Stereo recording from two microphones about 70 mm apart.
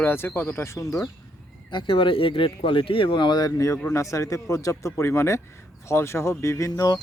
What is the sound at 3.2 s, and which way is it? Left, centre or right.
Speech, left.